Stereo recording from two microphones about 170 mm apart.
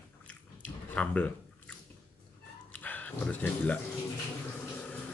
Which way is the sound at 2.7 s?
10° left (ahead or behind).